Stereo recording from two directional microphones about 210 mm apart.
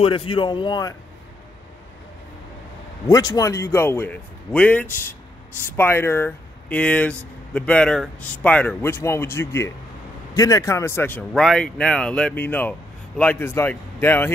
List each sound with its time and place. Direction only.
0.0 s speech: 25° left (ahead or behind)
3.1 s a man's voice: 15° left (ahead or behind)